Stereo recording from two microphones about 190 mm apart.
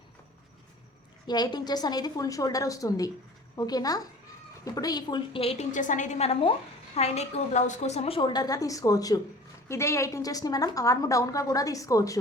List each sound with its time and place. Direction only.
1.3 s a woman's voice: 20° left (ahead or behind)